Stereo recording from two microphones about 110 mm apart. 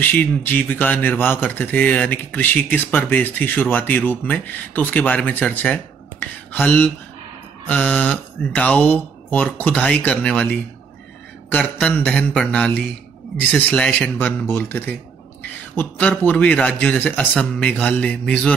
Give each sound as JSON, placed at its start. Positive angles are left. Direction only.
{"t": 0.0, "sound": "speech", "side_deg": 15}